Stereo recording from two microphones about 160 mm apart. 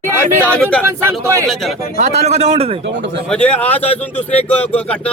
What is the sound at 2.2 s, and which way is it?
Speech, 45° right (ahead or behind).